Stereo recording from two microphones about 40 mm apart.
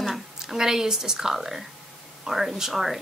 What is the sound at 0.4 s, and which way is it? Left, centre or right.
Speech, centre.